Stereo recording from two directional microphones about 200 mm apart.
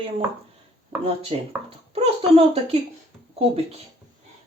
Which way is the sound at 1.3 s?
30° right (ahead or behind).